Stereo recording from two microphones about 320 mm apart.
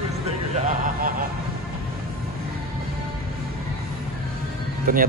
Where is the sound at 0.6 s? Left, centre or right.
Right.